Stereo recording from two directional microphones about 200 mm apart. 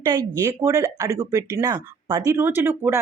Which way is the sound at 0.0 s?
20° right (ahead or behind).